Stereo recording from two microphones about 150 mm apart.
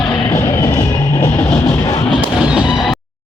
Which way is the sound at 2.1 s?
5° right (ahead or behind).